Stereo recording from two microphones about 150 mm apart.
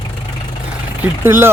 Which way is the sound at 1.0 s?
15° right (ahead or behind).